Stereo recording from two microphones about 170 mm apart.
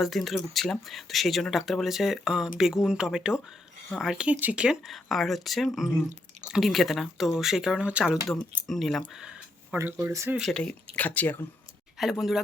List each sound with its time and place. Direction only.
0.0 s speech: centre (ahead or behind)
9.7 s speech: 15° right (ahead or behind)
10.3 s speech: centre (ahead or behind)
11.9 s speech: centre (ahead or behind)